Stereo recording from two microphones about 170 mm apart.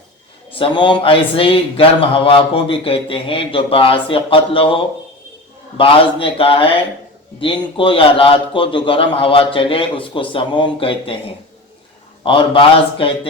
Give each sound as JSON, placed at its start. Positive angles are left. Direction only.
{"t": 0.6, "sound": "a man's voice", "side_deg": 30}